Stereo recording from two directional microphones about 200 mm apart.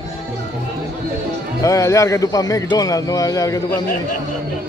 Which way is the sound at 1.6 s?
15° left (ahead or behind).